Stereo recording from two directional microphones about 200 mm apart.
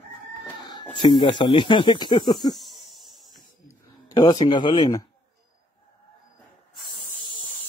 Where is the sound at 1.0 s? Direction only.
20° left (ahead or behind).